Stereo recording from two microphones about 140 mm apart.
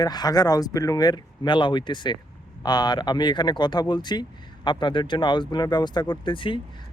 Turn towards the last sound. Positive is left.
turn(degrees=35)  # may be behind; listen again after turning